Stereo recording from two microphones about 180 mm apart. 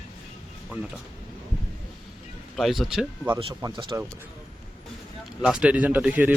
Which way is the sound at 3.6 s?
25° right (ahead or behind).